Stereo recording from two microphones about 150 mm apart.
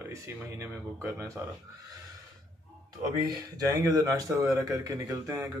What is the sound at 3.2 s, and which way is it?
Speech, 25° right (ahead or behind).